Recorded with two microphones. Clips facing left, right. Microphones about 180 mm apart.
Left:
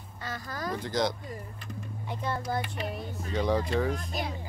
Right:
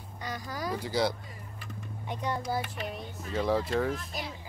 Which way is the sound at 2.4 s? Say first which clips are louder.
Left 1 dB; centre (ahead or behind).